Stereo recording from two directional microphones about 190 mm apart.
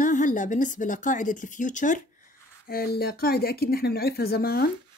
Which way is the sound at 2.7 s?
55° left (ahead or behind).